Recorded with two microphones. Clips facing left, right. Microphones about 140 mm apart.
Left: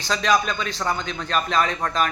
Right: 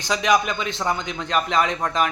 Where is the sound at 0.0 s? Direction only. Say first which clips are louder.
Right 1 dB; 15° right (ahead or behind).